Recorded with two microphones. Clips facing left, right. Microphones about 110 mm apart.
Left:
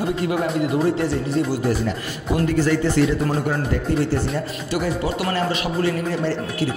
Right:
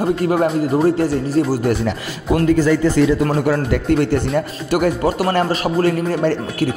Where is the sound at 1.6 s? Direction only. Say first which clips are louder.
Right 3 dB; 90° right.